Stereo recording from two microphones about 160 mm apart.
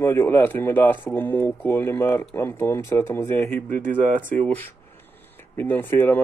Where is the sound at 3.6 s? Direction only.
55° right (ahead or behind).